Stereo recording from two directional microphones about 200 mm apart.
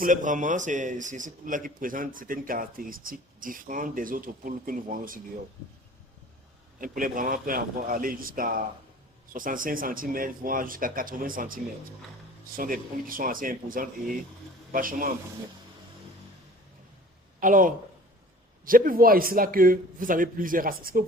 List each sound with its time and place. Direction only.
0.0 s a man's voice: 40° right (ahead or behind)
6.7 s a man's voice: 45° right (ahead or behind)
17.4 s a man's voice: 40° right (ahead or behind)